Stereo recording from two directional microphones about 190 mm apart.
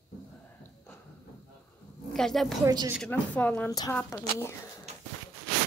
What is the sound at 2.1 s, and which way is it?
Speech, 5° left (ahead or behind).